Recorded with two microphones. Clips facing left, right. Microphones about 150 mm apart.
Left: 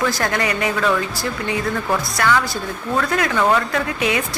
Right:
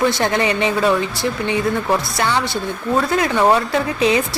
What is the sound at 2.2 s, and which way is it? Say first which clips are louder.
A woman's voice: even; 25° right (ahead or behind).